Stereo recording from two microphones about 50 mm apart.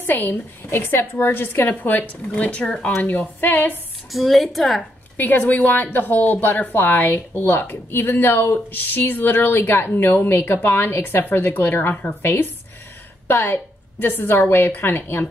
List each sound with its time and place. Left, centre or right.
0.0 s a woman's voice: left
0.7 s a woman's voice: left
4.1 s a woman's voice: centre
5.1 s a woman's voice: left